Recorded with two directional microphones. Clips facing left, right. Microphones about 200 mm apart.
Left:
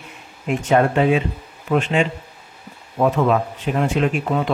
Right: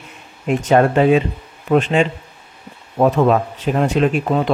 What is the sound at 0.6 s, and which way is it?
Speech, 40° right (ahead or behind).